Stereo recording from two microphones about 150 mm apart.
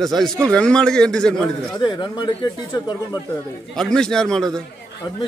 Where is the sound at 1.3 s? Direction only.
30° left (ahead or behind).